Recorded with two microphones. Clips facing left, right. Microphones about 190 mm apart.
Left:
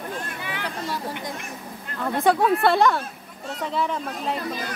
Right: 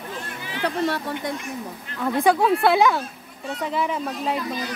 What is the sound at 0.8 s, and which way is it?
Speech, 65° right (ahead or behind).